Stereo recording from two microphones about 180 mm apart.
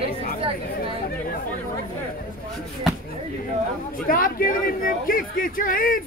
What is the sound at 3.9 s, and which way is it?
A man's voice, 50° left (ahead or behind).